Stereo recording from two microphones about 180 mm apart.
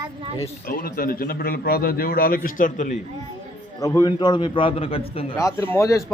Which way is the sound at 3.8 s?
20° left (ahead or behind).